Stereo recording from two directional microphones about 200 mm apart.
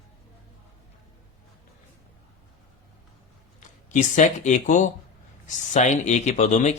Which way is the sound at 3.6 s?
40° left (ahead or behind).